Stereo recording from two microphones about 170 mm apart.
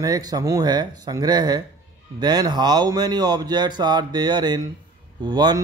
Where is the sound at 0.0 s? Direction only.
20° right (ahead or behind).